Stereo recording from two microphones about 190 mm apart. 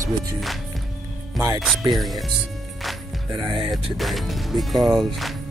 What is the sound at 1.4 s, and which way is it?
Speech, centre (ahead or behind).